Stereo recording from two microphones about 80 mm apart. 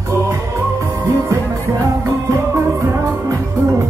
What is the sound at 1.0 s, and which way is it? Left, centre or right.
Music, right.